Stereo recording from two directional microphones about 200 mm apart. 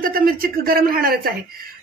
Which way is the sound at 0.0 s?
45° right (ahead or behind).